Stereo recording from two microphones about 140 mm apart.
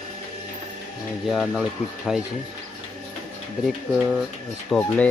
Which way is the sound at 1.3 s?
5° right (ahead or behind).